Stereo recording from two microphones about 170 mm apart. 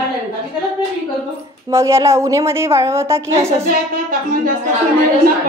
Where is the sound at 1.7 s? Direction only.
15° right (ahead or behind).